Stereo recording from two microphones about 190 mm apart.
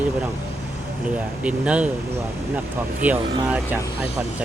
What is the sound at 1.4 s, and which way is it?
Speech, 5° right (ahead or behind).